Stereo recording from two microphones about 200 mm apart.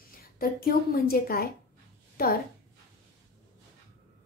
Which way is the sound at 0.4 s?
50° left (ahead or behind).